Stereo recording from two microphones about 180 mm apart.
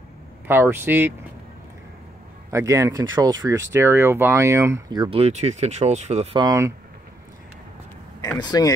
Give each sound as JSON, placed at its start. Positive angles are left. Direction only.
{"t": 0.5, "sound": "speech", "side_deg": -10}
{"t": 2.5, "sound": "speech", "side_deg": -15}
{"t": 5.2, "sound": "speech", "side_deg": -40}
{"t": 6.3, "sound": "speech", "side_deg": -20}
{"t": 8.4, "sound": "speech", "side_deg": 20}